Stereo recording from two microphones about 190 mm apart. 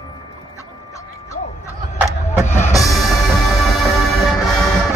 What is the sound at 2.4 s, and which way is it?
Music, 15° left (ahead or behind).